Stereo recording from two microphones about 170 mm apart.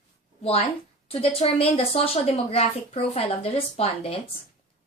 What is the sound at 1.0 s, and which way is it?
A woman's voice, 35° left (ahead or behind).